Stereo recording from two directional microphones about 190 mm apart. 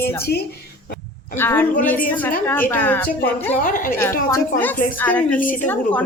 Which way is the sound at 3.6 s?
45° left (ahead or behind).